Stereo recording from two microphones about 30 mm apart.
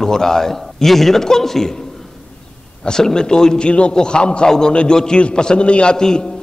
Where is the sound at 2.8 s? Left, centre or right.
Left.